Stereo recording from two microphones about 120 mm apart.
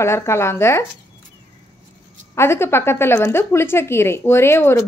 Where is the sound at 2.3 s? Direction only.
20° left (ahead or behind).